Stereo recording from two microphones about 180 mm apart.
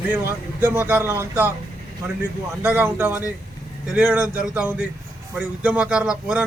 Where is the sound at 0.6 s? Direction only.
10° right (ahead or behind).